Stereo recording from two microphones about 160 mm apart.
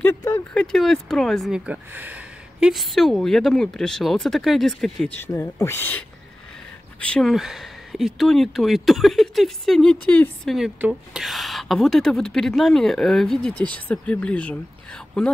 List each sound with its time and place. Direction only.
0.0 s a sound: 15° left (ahead or behind)
0.6 s speech: 5° left (ahead or behind)
5.2 s speech: 15° left (ahead or behind)